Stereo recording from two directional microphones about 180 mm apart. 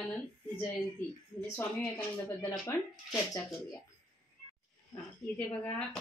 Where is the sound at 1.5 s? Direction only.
15° left (ahead or behind).